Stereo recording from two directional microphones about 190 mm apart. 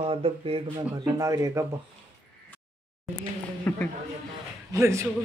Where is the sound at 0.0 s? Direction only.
30° right (ahead or behind).